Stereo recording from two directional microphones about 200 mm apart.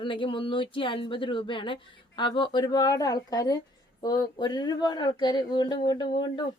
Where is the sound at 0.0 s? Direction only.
25° left (ahead or behind).